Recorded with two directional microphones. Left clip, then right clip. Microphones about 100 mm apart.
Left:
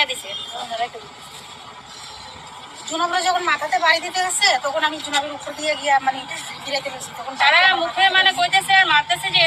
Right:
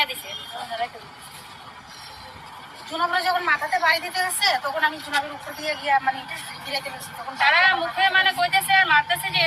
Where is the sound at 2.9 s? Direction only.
35° left (ahead or behind).